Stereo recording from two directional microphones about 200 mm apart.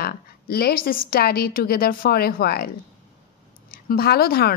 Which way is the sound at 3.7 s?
50° left (ahead or behind).